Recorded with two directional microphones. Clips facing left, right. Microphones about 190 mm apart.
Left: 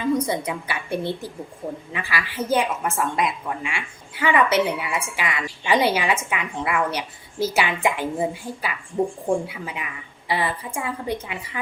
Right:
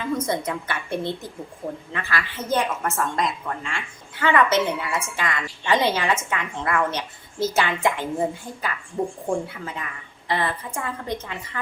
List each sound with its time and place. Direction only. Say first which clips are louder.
0.2 s a woman's voice: even; 10° left (ahead or behind)